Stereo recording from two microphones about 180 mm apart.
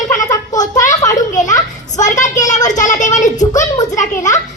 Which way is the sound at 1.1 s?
45° left (ahead or behind).